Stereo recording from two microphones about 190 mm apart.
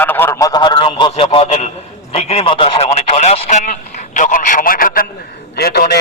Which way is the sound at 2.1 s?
35° left (ahead or behind).